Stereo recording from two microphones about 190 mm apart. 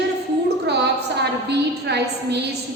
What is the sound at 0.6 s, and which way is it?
A woman's voice, 60° right (ahead or behind).